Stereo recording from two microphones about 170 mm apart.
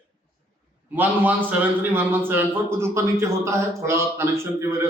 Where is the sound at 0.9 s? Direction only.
10° right (ahead or behind).